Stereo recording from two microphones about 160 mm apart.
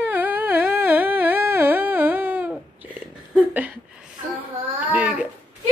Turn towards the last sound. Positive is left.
turn(degrees=-5)  # may be behind; listen again after turning